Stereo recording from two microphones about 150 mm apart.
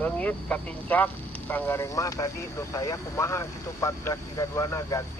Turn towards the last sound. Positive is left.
turn(degrees=20)  # may be behind; listen again after turning